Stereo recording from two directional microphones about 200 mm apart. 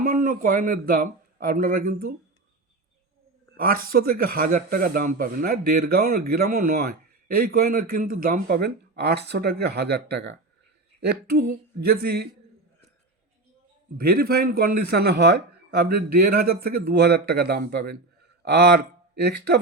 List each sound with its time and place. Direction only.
0.0 s speech: 40° right (ahead or behind)
3.6 s speech: 45° right (ahead or behind)
14.0 s speech: 50° right (ahead or behind)
16.5 s speech: 50° right (ahead or behind)